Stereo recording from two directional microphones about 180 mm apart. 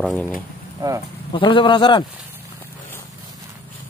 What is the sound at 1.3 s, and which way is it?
Speech, 25° left (ahead or behind).